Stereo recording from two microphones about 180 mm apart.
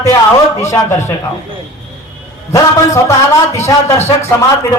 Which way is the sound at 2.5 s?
15° left (ahead or behind).